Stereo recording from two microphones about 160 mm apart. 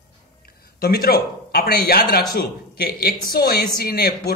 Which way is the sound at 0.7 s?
70° left (ahead or behind).